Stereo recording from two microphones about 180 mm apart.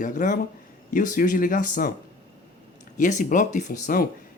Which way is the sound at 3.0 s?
45° left (ahead or behind).